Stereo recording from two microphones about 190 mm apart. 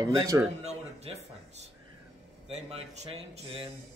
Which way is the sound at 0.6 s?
35° right (ahead or behind).